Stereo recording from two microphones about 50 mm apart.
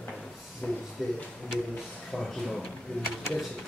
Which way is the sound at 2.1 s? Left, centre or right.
Centre.